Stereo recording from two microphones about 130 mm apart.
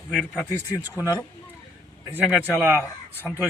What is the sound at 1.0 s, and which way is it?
Speech, 20° left (ahead or behind).